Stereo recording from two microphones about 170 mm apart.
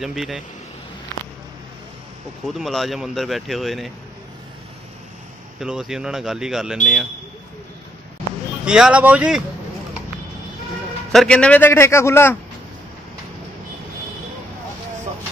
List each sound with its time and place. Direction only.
0.0 s speech: centre (ahead or behind)
2.4 s speech: centre (ahead or behind)
5.6 s speech: 5° right (ahead or behind)
8.6 s speech: 5° right (ahead or behind)
11.1 s a man's voice: 5° left (ahead or behind)